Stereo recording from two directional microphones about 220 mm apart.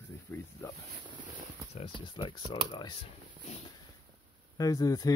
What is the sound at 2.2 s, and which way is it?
Speech, 20° left (ahead or behind).